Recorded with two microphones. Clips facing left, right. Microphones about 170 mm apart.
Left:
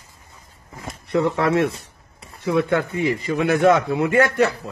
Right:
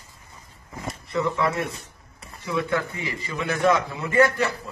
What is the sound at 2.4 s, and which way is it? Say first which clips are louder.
A man's voice: left 6 dB; 65° left (ahead or behind).